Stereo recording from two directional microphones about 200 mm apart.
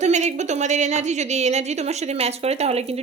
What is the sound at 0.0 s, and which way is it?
A woman's voice, 35° right (ahead or behind).